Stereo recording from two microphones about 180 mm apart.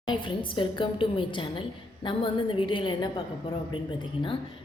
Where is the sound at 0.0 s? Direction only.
25° left (ahead or behind).